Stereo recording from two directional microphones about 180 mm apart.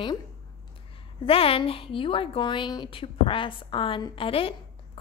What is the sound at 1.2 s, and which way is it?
A woman's voice, 30° left (ahead or behind).